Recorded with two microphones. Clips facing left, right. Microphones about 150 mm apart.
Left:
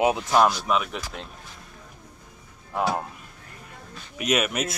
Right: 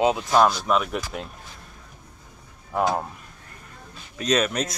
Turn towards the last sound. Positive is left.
turn(degrees=5)  # may be behind; listen again after turning